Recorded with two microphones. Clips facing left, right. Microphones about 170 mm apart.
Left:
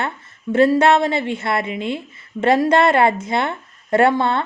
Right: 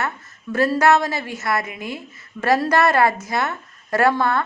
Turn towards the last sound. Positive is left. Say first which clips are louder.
# left 2 dB
turn(degrees=25)  # may be behind; listen again after turning